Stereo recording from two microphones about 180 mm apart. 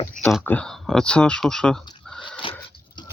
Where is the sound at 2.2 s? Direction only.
30° left (ahead or behind).